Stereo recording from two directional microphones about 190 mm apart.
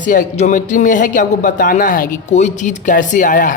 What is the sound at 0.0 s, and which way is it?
A man's voice, 45° left (ahead or behind).